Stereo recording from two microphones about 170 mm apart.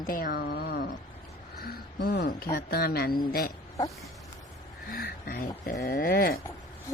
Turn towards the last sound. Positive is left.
turn(degrees=60)  # may be behind; listen again after turning